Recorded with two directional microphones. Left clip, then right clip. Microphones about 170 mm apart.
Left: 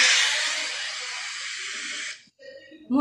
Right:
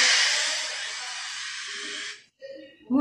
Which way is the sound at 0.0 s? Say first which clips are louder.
Left 1 dB; 20° right (ahead or behind).